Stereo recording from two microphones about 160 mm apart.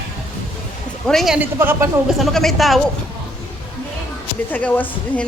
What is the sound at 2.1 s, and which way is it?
Speech, centre (ahead or behind).